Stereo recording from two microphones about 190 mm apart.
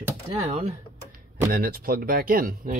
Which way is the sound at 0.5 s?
35° right (ahead or behind).